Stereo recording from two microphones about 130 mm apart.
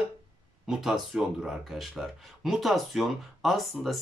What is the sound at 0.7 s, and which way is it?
Speech, centre (ahead or behind).